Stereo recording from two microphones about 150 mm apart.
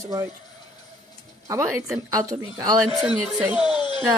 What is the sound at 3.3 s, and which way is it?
Speech, 5° right (ahead or behind).